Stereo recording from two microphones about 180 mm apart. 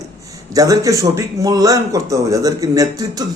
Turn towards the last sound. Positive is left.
turn(degrees=-20)  # may be behind; listen again after turning